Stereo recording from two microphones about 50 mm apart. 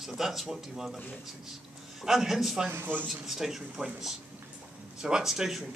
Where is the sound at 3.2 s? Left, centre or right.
Centre.